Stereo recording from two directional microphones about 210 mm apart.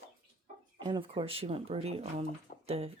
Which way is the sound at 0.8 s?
25° right (ahead or behind).